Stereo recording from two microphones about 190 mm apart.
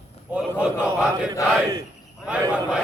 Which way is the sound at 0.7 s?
5° right (ahead or behind).